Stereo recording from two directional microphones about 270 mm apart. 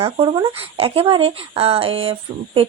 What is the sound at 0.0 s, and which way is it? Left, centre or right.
Speech, centre.